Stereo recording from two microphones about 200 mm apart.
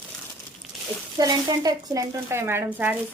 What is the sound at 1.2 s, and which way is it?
Speech, 20° right (ahead or behind).